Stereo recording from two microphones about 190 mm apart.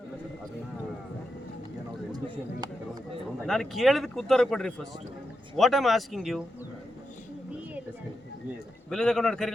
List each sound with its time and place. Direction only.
2.1 s a sound: 20° right (ahead or behind)
3.4 s speech: centre (ahead or behind)
8.9 s speech: 5° left (ahead or behind)